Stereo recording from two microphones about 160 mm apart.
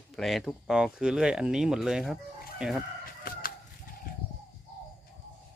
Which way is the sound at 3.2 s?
65° left (ahead or behind).